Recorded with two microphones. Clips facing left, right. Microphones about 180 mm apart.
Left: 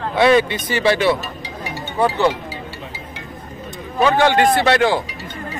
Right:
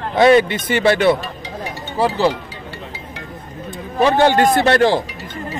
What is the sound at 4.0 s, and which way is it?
Speech, 45° right (ahead or behind).